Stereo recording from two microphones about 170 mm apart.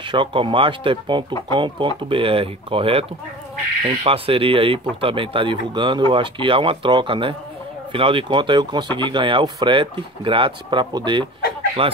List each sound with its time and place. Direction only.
0.0 s speech: 30° right (ahead or behind)